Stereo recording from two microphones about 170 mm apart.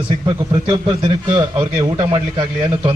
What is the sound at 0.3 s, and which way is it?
A man's voice, 25° right (ahead or behind).